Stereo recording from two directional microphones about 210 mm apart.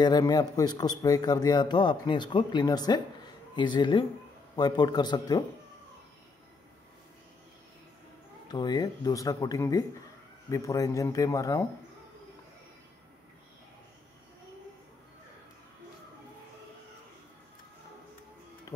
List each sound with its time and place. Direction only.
0.0 s a man's voice: 20° left (ahead or behind)
8.5 s speech: 20° left (ahead or behind)